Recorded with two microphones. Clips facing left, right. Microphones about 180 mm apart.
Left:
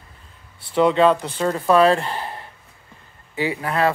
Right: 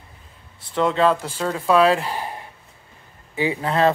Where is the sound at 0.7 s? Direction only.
Centre (ahead or behind).